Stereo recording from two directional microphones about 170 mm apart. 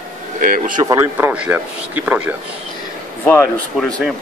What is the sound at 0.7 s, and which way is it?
Speech, 20° right (ahead or behind).